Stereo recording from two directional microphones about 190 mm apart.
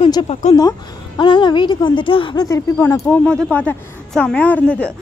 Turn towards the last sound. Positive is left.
turn(degrees=5)  # may be behind; listen again after turning